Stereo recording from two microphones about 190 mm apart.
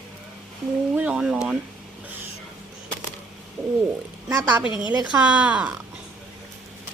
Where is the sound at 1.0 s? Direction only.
5° right (ahead or behind).